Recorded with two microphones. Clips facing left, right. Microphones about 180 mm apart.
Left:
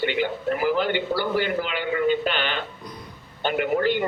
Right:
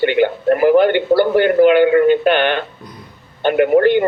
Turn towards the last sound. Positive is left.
turn(degrees=-60)  # may be behind; listen again after turning